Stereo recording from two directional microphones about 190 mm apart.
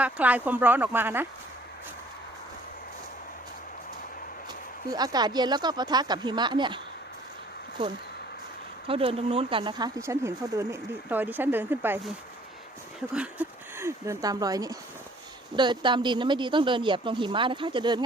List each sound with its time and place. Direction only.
0.0 s speech: 10° right (ahead or behind)
4.9 s speech: 20° right (ahead or behind)
8.9 s speech: 30° right (ahead or behind); by 12.1 s 10° right (ahead or behind)
13.1 s speech: 10° right (ahead or behind)